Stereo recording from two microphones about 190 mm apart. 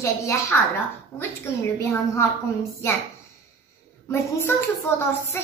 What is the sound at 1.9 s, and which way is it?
Speech, 15° left (ahead or behind).